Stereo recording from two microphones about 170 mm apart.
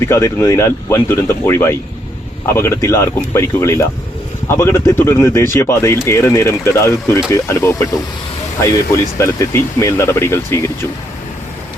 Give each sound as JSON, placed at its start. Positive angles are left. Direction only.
{"t": 0.0, "sound": "speech", "side_deg": 15}
{"t": 9.1, "sound": "speech", "side_deg": 15}